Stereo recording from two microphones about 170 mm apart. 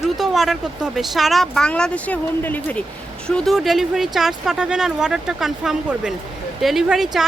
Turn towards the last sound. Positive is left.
turn(degrees=0)  # may be behind; listen again after turning